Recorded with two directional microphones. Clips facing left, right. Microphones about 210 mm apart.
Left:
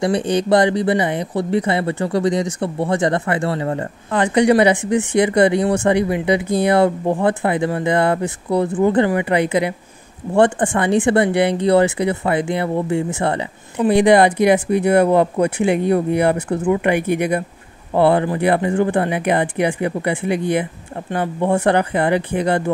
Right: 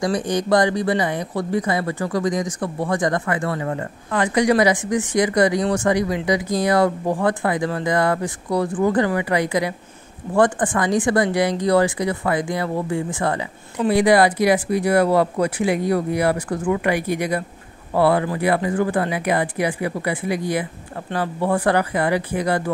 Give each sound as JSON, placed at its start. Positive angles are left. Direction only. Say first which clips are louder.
{"t": 0.0, "sound": "speech", "louder": "left 3 dB", "side_deg": 25}
{"t": 17.9, "sound": "speech", "louder": "left 3 dB", "side_deg": 25}